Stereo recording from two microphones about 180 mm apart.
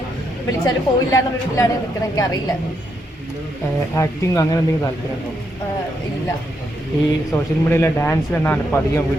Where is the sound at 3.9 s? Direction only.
15° left (ahead or behind).